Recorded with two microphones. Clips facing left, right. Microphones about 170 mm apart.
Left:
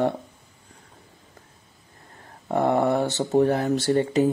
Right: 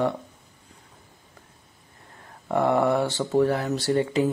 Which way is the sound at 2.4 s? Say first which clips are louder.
Even; 35° left (ahead or behind).